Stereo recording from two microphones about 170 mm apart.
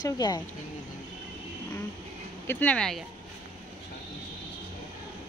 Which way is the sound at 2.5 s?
10° left (ahead or behind).